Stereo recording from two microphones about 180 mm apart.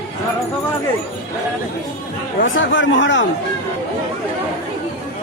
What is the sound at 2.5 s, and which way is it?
Speech, 90° left.